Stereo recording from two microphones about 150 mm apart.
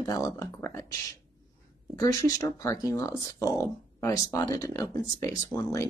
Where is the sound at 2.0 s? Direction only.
25° left (ahead or behind).